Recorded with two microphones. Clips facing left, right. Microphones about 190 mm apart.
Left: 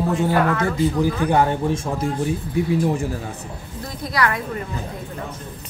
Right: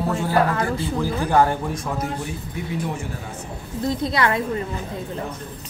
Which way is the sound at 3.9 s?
25° right (ahead or behind).